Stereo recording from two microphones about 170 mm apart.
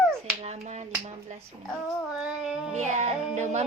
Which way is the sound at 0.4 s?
40° right (ahead or behind).